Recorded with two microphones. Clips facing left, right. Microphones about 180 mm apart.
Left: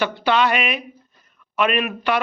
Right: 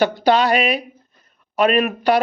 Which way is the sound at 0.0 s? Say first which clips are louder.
Right 3 dB; 40° right (ahead or behind).